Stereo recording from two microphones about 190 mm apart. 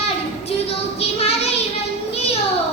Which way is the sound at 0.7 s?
30° left (ahead or behind).